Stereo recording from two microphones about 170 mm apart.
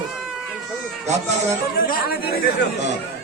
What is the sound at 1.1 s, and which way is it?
Speech, 40° right (ahead or behind).